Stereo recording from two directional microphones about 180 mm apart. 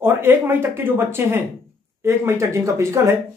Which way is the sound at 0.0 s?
10° right (ahead or behind).